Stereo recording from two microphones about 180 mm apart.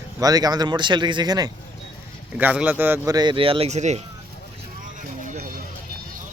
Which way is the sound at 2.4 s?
10° right (ahead or behind).